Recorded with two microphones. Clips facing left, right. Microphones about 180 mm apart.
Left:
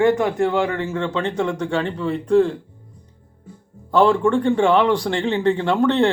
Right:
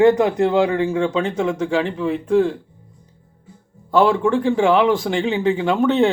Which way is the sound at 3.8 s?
5° right (ahead or behind).